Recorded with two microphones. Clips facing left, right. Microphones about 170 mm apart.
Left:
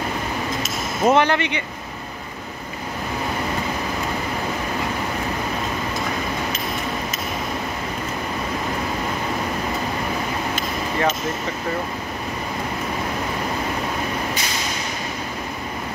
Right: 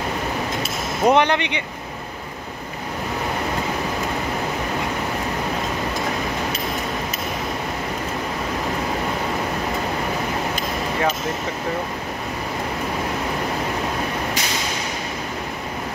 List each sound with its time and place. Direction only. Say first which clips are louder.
1.0 s speech: even; 20° right (ahead or behind)